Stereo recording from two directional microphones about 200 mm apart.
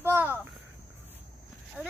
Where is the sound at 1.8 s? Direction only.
5° right (ahead or behind).